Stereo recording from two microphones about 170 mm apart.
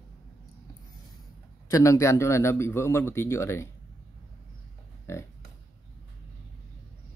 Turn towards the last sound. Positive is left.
turn(degrees=15)  # may be behind; listen again after turning